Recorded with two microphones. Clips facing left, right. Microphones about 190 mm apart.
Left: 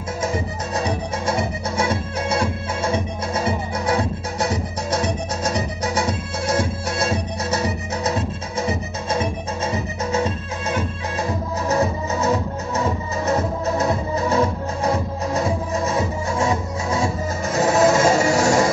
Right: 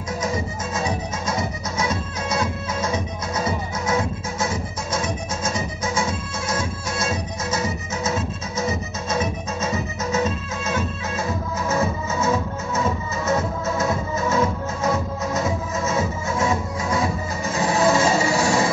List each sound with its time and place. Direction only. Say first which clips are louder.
0.7 s music: left 3 dB; 35° left (ahead or behind)
13.3 s music: left 2 dB; 35° left (ahead or behind)
17.6 s a sound: left 3 dB; 45° left (ahead or behind)